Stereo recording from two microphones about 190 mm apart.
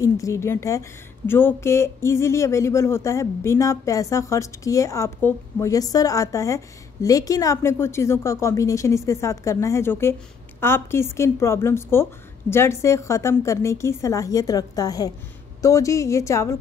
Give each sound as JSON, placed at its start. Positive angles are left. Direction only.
{"t": 0.0, "sound": "a woman's voice", "side_deg": 15}